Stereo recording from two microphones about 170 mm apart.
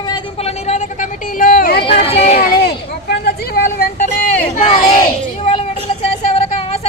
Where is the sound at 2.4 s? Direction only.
70° left (ahead or behind).